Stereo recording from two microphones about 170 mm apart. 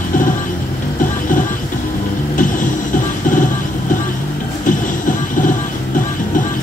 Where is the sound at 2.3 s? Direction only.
50° left (ahead or behind).